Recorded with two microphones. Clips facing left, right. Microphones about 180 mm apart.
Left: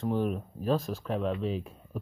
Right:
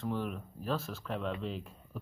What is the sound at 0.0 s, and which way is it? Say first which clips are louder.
Speech: left 7 dB; 20° left (ahead or behind).